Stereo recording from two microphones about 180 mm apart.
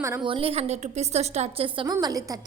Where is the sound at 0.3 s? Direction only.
30° right (ahead or behind).